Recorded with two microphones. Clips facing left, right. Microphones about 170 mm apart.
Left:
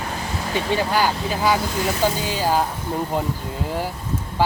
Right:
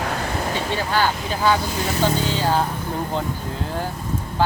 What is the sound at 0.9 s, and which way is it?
Speech, 10° left (ahead or behind).